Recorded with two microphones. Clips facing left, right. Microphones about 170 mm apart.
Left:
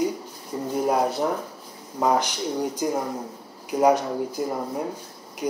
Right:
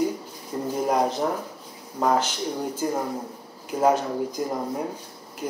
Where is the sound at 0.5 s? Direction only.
5° left (ahead or behind).